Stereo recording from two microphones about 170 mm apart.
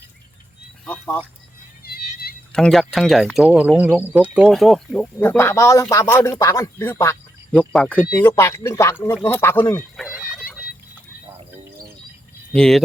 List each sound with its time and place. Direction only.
0.9 s speech: 10° left (ahead or behind)
1.8 s music: 65° left (ahead or behind)
2.5 s speech: 5° left (ahead or behind)
5.2 s speech: 15° left (ahead or behind)
10.2 s pour: 5° right (ahead or behind)
12.5 s speech: 5° left (ahead or behind)